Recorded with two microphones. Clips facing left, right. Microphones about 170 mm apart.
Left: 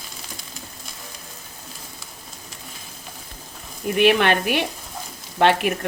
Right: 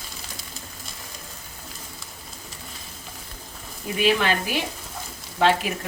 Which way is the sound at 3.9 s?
65° left (ahead or behind).